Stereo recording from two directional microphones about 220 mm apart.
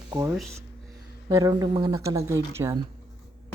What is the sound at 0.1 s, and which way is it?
Speech, 10° right (ahead or behind).